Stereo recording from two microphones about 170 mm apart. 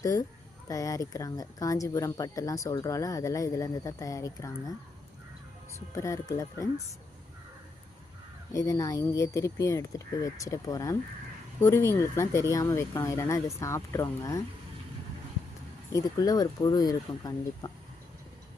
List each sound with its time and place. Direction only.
0.0 s speech: 20° left (ahead or behind)
5.9 s speech: 15° left (ahead or behind)
8.5 s speech: 20° left (ahead or behind)
15.9 s speech: 20° left (ahead or behind)